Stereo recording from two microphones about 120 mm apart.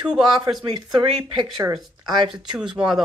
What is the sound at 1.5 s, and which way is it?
Speech, 35° right (ahead or behind).